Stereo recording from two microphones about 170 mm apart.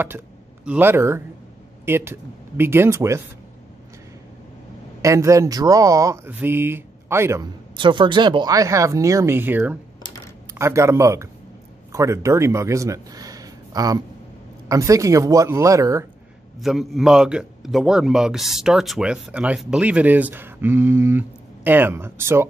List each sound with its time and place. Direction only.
0.7 s speech: 10° right (ahead or behind)
5.0 s speech: 20° right (ahead or behind)
7.7 s speech: 30° right (ahead or behind)
16.5 s a man's voice: centre (ahead or behind)